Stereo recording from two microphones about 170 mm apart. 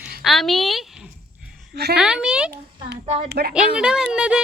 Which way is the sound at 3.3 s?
70° right (ahead or behind).